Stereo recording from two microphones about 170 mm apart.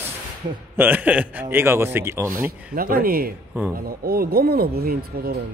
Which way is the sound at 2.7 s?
60° right (ahead or behind).